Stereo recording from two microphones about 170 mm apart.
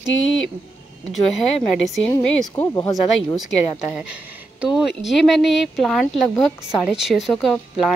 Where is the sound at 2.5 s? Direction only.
20° left (ahead or behind).